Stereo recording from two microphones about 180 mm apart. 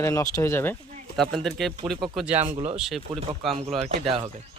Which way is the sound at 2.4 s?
35° right (ahead or behind).